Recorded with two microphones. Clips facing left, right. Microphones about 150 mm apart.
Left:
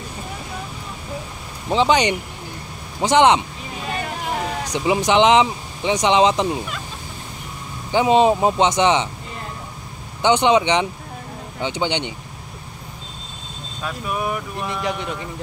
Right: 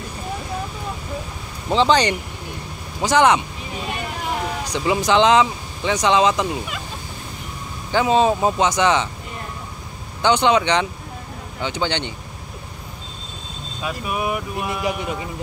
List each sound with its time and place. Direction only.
1.7 s speech: 15° left (ahead or behind)
4.7 s speech: 20° left (ahead or behind)
7.9 s speech: 20° left (ahead or behind)
10.2 s speech: 20° left (ahead or behind)
13.8 s speech: 10° right (ahead or behind)